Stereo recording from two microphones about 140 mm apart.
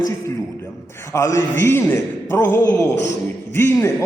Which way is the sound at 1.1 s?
20° left (ahead or behind).